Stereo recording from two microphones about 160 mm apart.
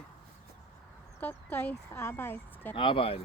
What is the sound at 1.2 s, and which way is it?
Speech, 10° left (ahead or behind).